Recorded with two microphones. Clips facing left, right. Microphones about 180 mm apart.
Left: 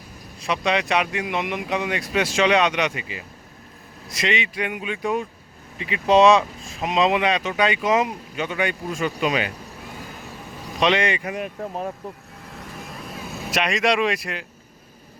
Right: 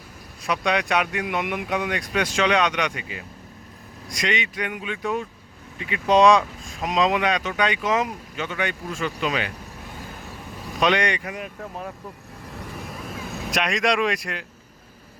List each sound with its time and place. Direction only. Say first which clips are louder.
0.4 s speech: left 1 dB; centre (ahead or behind)
10.8 s speech: left 1 dB; centre (ahead or behind)
11.2 s speech: left 5 dB; 25° left (ahead or behind)
13.5 s speech: left 2 dB; centre (ahead or behind)